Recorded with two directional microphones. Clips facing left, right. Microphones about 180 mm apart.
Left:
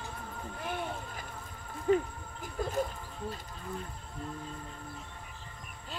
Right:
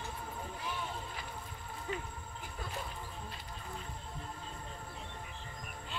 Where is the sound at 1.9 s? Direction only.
50° left (ahead or behind).